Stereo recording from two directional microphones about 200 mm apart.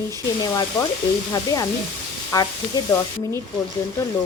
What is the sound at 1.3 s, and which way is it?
Speech, 20° left (ahead or behind).